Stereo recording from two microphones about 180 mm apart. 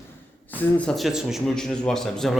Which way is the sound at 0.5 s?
5° left (ahead or behind).